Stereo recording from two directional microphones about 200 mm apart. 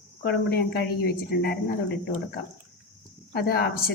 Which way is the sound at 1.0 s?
50° left (ahead or behind).